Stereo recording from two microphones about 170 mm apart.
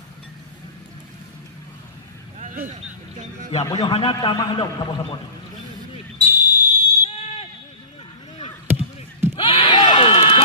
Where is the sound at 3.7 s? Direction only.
30° left (ahead or behind).